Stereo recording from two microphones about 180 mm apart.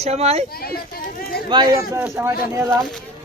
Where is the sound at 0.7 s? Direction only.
60° left (ahead or behind).